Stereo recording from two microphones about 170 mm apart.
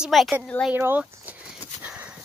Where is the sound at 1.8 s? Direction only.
10° right (ahead or behind).